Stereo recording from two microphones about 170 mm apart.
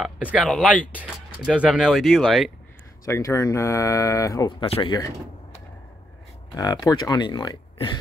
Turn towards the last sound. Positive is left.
turn(degrees=25)  # may be behind; listen again after turning